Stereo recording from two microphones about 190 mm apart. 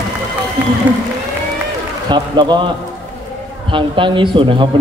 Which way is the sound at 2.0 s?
25° right (ahead or behind).